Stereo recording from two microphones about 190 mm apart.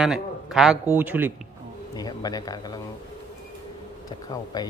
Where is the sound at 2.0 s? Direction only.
20° left (ahead or behind).